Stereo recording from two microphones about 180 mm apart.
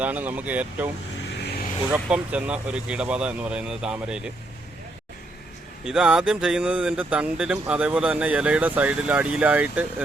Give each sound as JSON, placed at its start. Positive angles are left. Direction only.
{"t": 0.0, "sound": "speech", "side_deg": -10}
{"t": 1.4, "sound": "vehicle", "side_deg": 60}
{"t": 1.9, "sound": "speech", "side_deg": -5}
{"t": 5.8, "sound": "speech", "side_deg": -5}